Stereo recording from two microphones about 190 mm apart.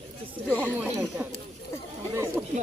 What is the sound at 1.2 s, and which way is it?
Snake, 10° right (ahead or behind).